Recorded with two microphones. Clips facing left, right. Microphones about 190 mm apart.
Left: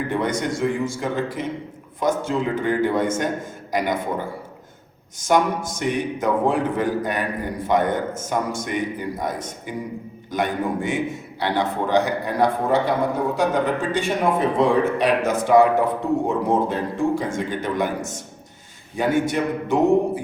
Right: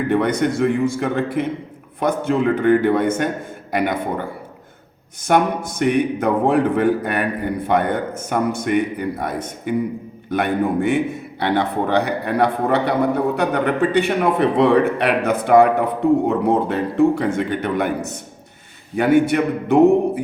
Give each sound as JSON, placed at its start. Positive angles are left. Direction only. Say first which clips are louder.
{"t": 0.1, "sound": "a man's voice", "louder": "right 8 dB", "side_deg": -60}
{"t": 5.2, "sound": "a man's voice", "louder": "right 2 dB", "side_deg": -60}